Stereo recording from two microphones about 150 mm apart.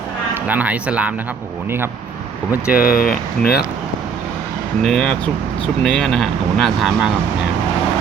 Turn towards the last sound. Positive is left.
turn(degrees=0)  # may be behind; listen again after turning